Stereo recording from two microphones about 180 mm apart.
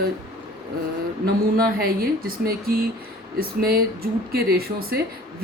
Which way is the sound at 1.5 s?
55° right (ahead or behind).